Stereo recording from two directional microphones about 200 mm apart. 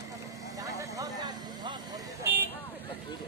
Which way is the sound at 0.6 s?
15° right (ahead or behind).